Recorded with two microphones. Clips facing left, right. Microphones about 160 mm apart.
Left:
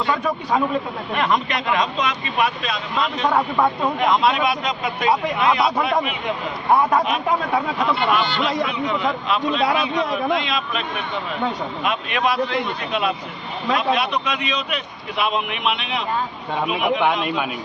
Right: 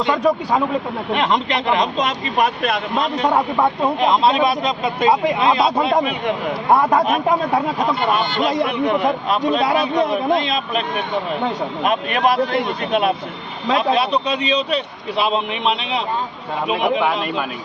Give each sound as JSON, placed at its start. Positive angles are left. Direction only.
{"t": 1.1, "sound": "speech", "side_deg": -20}
{"t": 2.6, "sound": "speech", "side_deg": -55}
{"t": 2.9, "sound": "speech", "side_deg": -40}
{"t": 3.2, "sound": "a man's voice", "side_deg": -20}
{"t": 13.7, "sound": "speech", "side_deg": -30}
{"t": 17.0, "sound": "a man's voice", "side_deg": 0}